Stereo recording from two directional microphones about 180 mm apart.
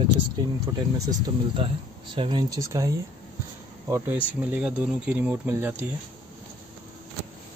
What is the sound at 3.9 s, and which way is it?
Speech, 10° right (ahead or behind).